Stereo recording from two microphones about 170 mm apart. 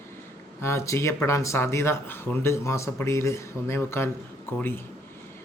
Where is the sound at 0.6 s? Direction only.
15° left (ahead or behind).